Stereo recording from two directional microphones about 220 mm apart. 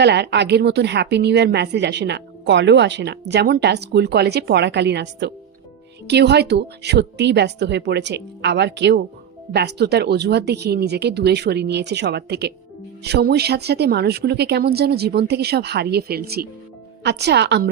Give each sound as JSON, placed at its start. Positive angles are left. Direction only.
{"t": 0.0, "sound": "a woman's voice", "side_deg": -50}